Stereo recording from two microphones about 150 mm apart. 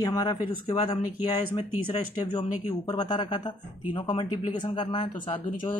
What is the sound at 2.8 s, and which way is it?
Speech, 30° left (ahead or behind).